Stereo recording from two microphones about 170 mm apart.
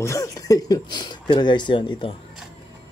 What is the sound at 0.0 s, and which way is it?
Speech, 15° left (ahead or behind).